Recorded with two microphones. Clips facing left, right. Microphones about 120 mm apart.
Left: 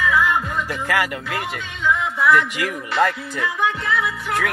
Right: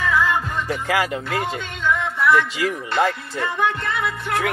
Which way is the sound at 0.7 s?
25° right (ahead or behind).